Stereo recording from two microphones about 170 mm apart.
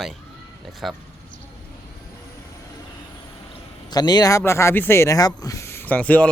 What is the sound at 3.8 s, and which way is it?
Speech, 25° left (ahead or behind).